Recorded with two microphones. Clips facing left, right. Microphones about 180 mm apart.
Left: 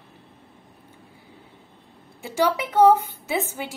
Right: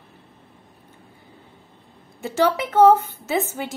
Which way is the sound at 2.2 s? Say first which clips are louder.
Right 2 dB; 10° left (ahead or behind).